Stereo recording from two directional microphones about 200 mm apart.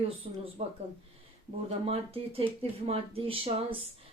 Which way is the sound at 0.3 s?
30° right (ahead or behind).